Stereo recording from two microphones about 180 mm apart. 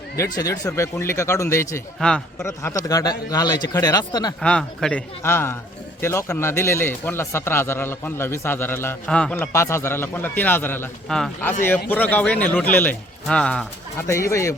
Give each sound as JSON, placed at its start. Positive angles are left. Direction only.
{"t": 0.2, "sound": "a man's voice", "side_deg": 20}
{"t": 2.0, "sound": "a man's voice", "side_deg": 5}
{"t": 2.4, "sound": "a man's voice", "side_deg": 15}
{"t": 4.4, "sound": "a man's voice", "side_deg": 5}